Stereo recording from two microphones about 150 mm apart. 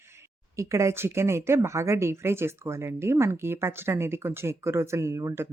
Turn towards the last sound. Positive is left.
turn(degrees=-20)  # may be behind; listen again after turning